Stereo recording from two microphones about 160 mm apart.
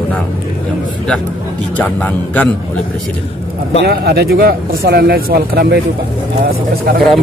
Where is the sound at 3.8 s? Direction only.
80° right.